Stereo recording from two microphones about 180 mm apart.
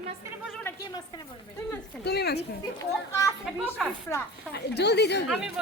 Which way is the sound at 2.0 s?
65° left (ahead or behind).